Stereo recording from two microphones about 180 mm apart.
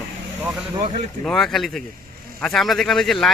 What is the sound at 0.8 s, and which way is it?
Speech, 40° right (ahead or behind).